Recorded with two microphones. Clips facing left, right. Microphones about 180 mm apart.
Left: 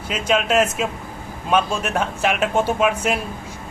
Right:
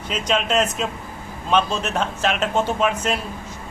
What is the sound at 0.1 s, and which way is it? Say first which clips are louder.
A man's voice: left 2 dB; 5° left (ahead or behind).